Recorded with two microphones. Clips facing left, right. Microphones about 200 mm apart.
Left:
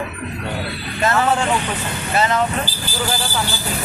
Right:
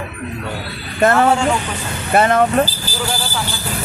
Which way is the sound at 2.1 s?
55° right (ahead or behind).